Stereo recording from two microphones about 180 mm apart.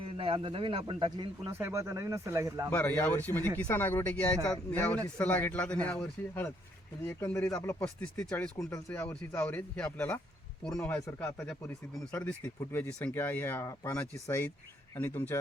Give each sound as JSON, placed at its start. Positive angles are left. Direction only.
{"t": 0.0, "sound": "speech", "side_deg": -30}
{"t": 1.5, "sound": "speech", "side_deg": -15}
{"t": 2.6, "sound": "speech", "side_deg": 10}